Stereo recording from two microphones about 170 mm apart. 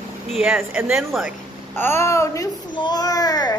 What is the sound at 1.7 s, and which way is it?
Speech, 15° left (ahead or behind).